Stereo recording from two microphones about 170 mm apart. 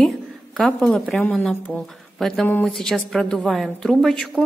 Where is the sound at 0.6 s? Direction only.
5° left (ahead or behind).